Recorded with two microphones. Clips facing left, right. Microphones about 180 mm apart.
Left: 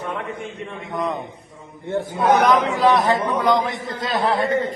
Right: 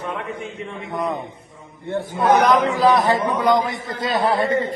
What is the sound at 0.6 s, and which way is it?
Speech, centre (ahead or behind).